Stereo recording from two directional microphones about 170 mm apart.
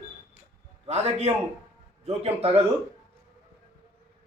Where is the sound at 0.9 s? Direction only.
40° right (ahead or behind).